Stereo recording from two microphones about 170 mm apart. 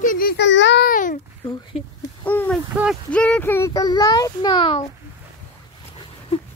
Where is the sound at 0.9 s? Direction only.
50° left (ahead or behind).